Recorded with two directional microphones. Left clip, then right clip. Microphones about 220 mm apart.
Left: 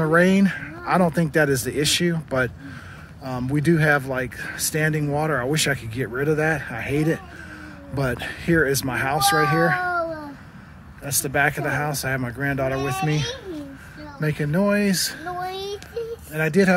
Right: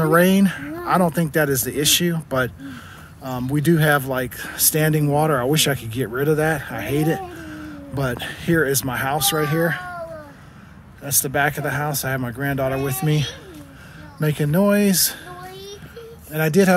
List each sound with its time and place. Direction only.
0.0 s speech: 5° right (ahead or behind)
11.1 s speech: 5° right (ahead or behind)
15.5 s child singing: 30° left (ahead or behind)
16.3 s speech: 10° right (ahead or behind)